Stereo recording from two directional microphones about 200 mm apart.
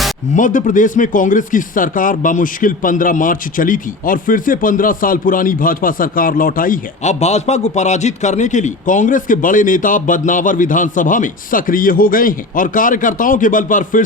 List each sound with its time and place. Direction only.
0.3 s speech: 40° left (ahead or behind)